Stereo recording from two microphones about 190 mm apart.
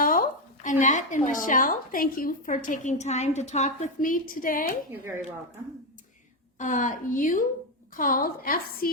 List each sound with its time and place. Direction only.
0.0 s speech: 45° left (ahead or behind)
6.6 s speech: 40° left (ahead or behind)